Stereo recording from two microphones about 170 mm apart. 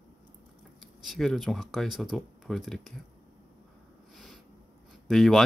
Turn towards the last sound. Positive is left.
turn(degrees=0)  # may be behind; listen again after turning